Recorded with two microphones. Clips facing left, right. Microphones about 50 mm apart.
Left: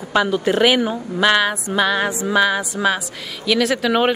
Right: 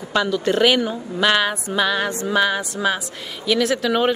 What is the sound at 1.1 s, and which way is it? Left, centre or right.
Speech, centre.